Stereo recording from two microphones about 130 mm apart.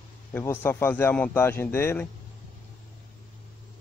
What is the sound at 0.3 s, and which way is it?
A man's voice, 15° left (ahead or behind).